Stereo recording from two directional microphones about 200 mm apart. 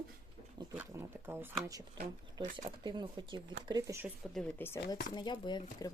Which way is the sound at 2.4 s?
20° right (ahead or behind).